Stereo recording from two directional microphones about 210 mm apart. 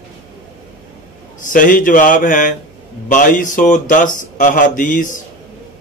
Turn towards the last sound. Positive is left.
turn(degrees=40)  # may be behind; listen again after turning